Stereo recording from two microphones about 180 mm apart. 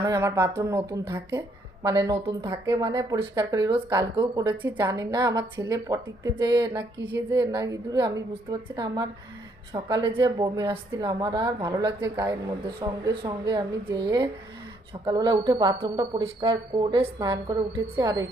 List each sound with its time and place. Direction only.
0.0 s a woman's voice: 15° right (ahead or behind)
4.5 s speech: 15° right (ahead or behind)